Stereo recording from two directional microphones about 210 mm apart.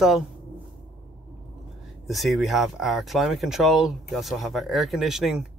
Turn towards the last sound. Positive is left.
turn(degrees=0)  # may be behind; listen again after turning